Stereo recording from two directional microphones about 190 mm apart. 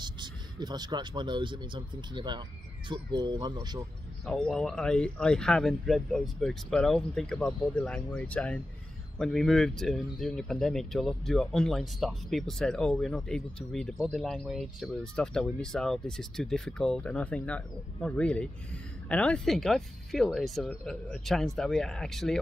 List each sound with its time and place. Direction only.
0.0 s speech: 25° right (ahead or behind)
4.3 s speech: 5° left (ahead or behind)